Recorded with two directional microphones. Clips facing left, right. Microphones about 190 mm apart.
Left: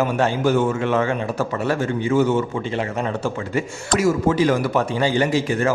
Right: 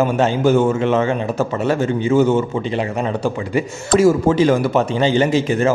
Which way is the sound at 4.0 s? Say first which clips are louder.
Right 5 dB; 30° right (ahead or behind).